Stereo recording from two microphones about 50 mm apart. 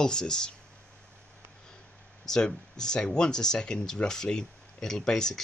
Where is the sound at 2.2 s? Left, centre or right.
Centre.